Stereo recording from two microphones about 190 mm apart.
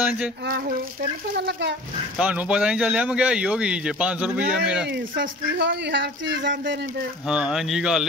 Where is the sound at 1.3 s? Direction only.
65° right (ahead or behind).